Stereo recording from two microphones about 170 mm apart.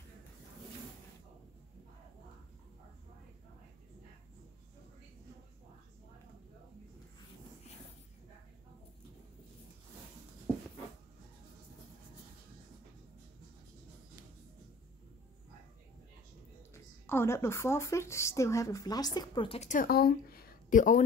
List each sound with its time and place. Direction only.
16.7 s speech: 15° left (ahead or behind); by 19.7 s 30° left (ahead or behind)
19.7 s speech: 60° left (ahead or behind)